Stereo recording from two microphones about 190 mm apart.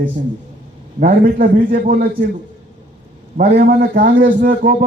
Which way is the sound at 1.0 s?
45° right (ahead or behind).